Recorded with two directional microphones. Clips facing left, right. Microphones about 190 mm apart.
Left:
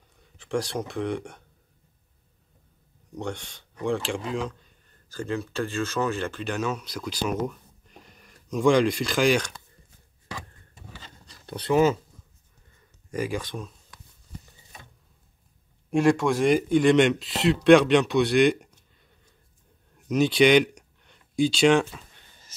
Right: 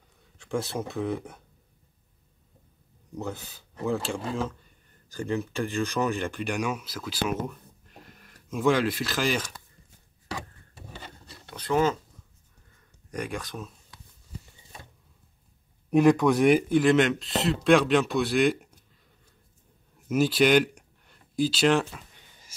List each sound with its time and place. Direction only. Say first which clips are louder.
0.2 s speech: left 2 dB; centre (ahead or behind)
3.2 s speech: left 2 dB; 5° right (ahead or behind)
5.1 s speech: even; 15° right (ahead or behind)
11.4 s a sound: left 8 dB; 30° left (ahead or behind)
11.7 s speech: left 4 dB; 10° left (ahead or behind)
13.1 s speech: left 4 dB; centre (ahead or behind)
16.4 s speech: left 2 dB; 5° right (ahead or behind)
20.1 s speech: left 2 dB; 5° right (ahead or behind)